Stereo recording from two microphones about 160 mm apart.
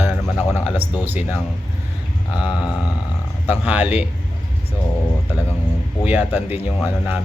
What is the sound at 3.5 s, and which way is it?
Speech, 10° right (ahead or behind).